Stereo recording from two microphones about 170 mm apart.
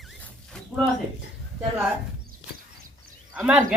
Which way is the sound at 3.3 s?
5° right (ahead or behind).